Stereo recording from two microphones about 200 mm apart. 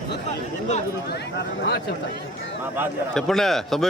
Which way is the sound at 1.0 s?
55° left (ahead or behind).